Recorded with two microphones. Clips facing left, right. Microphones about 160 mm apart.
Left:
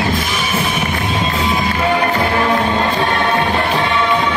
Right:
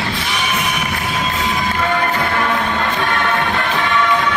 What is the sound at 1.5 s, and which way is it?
Music, 20° left (ahead or behind).